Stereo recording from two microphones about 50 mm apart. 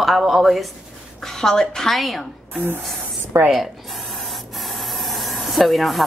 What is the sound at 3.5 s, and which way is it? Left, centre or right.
Spray, centre.